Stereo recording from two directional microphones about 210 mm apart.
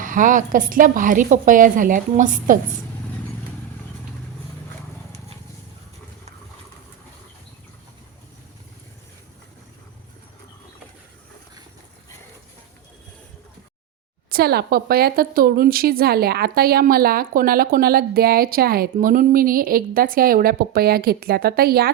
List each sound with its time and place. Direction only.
0.0 s a woman's voice: 40° right (ahead or behind)
14.3 s a woman's voice: 45° right (ahead or behind)